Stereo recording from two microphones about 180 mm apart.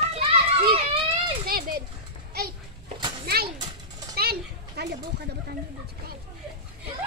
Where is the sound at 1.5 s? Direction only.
55° right (ahead or behind).